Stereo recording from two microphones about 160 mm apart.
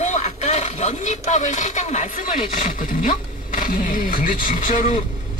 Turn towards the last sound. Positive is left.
turn(degrees=55)  # may be behind; listen again after turning